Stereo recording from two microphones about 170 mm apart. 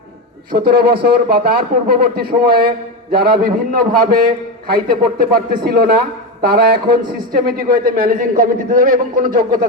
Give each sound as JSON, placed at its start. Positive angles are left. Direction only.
{"t": 0.5, "sound": "a man's voice", "side_deg": -65}
{"t": 7.1, "sound": "a man's voice", "side_deg": -60}